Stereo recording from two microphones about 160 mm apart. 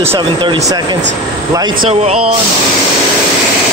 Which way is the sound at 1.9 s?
40° right (ahead or behind).